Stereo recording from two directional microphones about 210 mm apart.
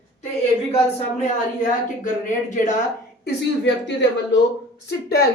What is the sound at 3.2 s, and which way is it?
A woman's voice, 60° left (ahead or behind).